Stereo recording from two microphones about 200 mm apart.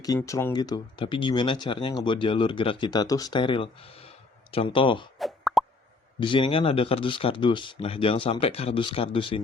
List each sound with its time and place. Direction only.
0.2 s speech: 10° left (ahead or behind)
5.2 s plop: centre (ahead or behind)
6.1 s speech: 25° left (ahead or behind)